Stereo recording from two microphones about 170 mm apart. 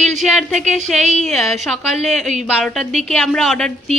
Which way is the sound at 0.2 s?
Centre (ahead or behind).